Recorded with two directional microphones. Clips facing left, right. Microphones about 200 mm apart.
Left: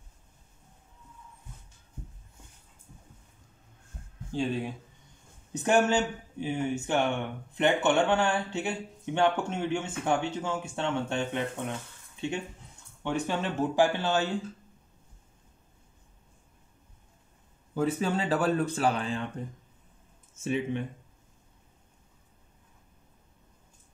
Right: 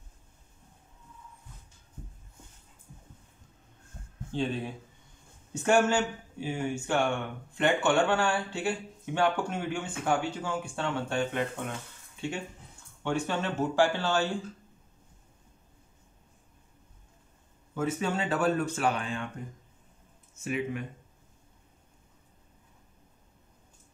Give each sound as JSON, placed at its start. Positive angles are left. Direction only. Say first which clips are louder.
{"t": 4.3, "sound": "speech", "louder": "left 1 dB", "side_deg": 10}
{"t": 13.0, "sound": "speech", "louder": "even", "side_deg": 15}
{"t": 17.7, "sound": "speech", "louder": "left 2 dB", "side_deg": 35}
{"t": 20.4, "sound": "speech", "louder": "left 2 dB", "side_deg": 30}